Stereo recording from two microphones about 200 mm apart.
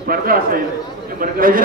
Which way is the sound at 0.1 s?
45° right (ahead or behind).